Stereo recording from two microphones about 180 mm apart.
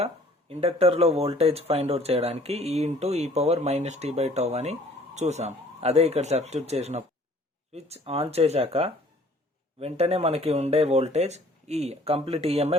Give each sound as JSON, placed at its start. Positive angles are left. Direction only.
{"t": 0.0, "sound": "speech", "side_deg": -35}